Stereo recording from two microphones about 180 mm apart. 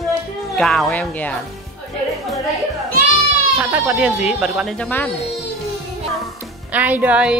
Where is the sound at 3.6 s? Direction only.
10° right (ahead or behind); by 5.1 s 10° left (ahead or behind).